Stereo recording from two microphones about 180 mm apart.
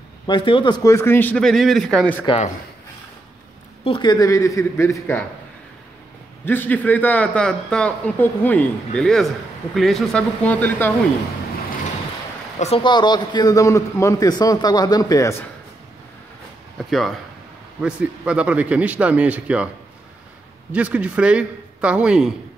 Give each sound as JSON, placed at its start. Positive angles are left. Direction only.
{"t": 0.3, "sound": "a man's voice", "side_deg": 25}
{"t": 2.2, "sound": "a man's voice", "side_deg": 35}
{"t": 3.8, "sound": "a man's voice", "side_deg": 25}
{"t": 6.4, "sound": "a man's voice", "side_deg": 10}
{"t": 12.5, "sound": "a man's voice", "side_deg": 35}
{"t": 16.7, "sound": "speech", "side_deg": 0}
{"t": 20.7, "sound": "speech", "side_deg": -5}